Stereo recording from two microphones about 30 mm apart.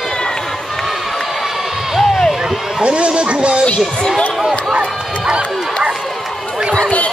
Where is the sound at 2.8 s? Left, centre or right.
Right.